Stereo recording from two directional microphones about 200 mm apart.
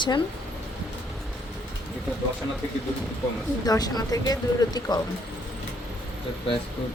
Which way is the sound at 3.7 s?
20° left (ahead or behind).